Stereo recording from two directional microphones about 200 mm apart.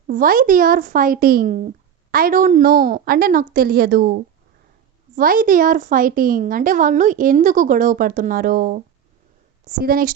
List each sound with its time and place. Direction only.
0.1 s speech: 45° right (ahead or behind)